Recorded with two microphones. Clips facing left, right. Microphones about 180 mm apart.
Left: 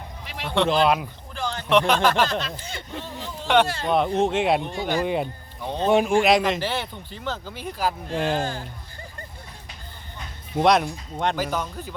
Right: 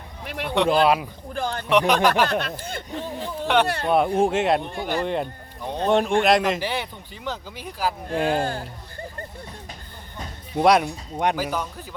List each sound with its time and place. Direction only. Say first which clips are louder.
0.3 s speech: right 5 dB; 55° right (ahead or behind)
0.5 s speech: right 1 dB; 10° right (ahead or behind)
1.3 s speech: right 3 dB; 50° right (ahead or behind)
1.6 s speech: even; 10° right (ahead or behind)
2.2 s speech: right 2 dB; 60° right (ahead or behind)
3.4 s speech: left 1 dB; centre (ahead or behind)
6.6 s speech: even; 15° right (ahead or behind)
8.3 s speech: right 2 dB; 50° right (ahead or behind)
10.6 s speech: right 1 dB; 5° right (ahead or behind)